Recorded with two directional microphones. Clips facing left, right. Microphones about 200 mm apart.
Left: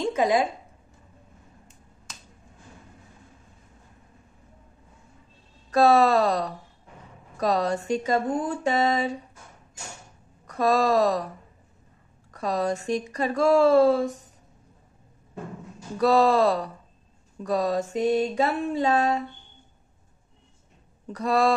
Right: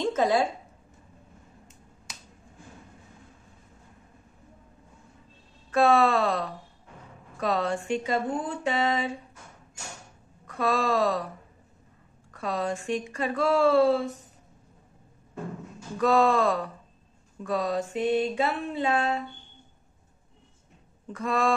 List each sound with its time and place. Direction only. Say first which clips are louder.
0.0 s speech: left 1 dB; 15° left (ahead or behind)
5.7 s speech: left 3 dB; 40° left (ahead or behind)
10.4 s speech: left 4 dB; 40° left (ahead or behind)
12.3 s speech: left 4 dB; 40° left (ahead or behind)
16.0 s speech: left 3 dB; 35° left (ahead or behind)
21.1 s speech: left 4 dB; 35° left (ahead or behind)